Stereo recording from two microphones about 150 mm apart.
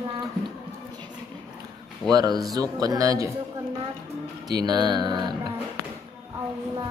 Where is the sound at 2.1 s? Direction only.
25° right (ahead or behind).